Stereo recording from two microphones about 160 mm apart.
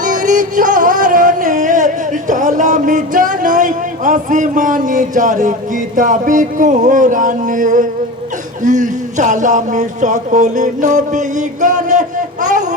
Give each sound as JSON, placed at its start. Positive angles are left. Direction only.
{"t": 0.0, "sound": "music", "side_deg": -55}
{"t": 6.0, "sound": "speech", "side_deg": -55}